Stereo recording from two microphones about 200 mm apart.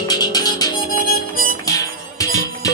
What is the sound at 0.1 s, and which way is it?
Music, 20° left (ahead or behind).